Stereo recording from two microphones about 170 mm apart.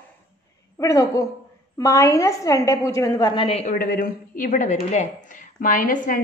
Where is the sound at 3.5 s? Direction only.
35° left (ahead or behind).